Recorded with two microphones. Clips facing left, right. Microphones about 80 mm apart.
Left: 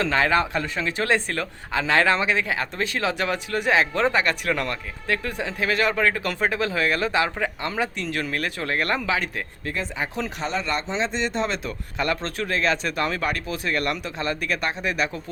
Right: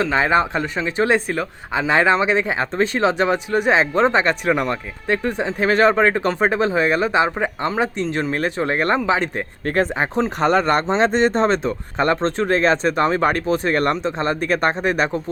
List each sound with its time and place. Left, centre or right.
0.0 s speech: right
9.6 s speech: right